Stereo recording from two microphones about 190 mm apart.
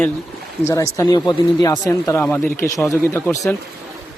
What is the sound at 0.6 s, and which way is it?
Speech, 15° left (ahead or behind).